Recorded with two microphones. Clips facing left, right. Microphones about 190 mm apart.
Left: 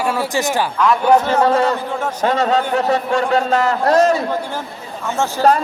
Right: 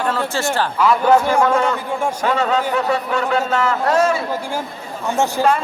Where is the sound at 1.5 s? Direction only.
35° left (ahead or behind).